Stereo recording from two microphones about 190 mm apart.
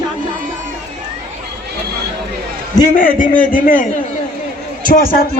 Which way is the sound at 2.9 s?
45° left (ahead or behind).